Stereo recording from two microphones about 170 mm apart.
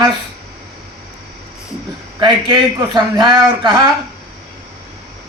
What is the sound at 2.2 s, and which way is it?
A man's voice, 30° right (ahead or behind).